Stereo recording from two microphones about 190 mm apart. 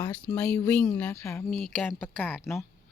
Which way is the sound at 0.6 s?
5° left (ahead or behind).